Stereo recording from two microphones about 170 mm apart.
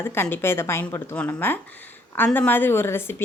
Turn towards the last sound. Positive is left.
turn(degrees=15)  # may be behind; listen again after turning